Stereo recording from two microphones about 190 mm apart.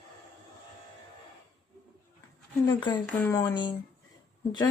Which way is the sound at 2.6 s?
20° left (ahead or behind).